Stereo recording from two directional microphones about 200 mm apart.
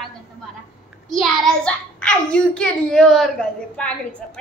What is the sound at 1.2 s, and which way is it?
A child's voice, 5° left (ahead or behind).